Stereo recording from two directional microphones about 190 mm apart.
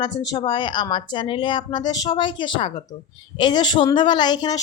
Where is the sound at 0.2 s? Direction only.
20° left (ahead or behind).